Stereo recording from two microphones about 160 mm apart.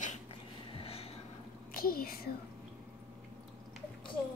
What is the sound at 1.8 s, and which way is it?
Speech, 65° left (ahead or behind).